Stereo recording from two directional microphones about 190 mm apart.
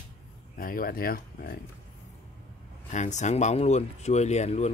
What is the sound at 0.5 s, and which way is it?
Speech, 50° left (ahead or behind).